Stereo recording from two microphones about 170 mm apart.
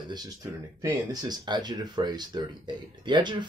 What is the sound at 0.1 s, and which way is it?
Speech, 20° right (ahead or behind).